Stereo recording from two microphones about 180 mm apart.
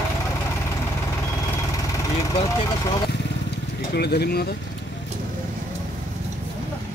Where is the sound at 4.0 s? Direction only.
60° left (ahead or behind).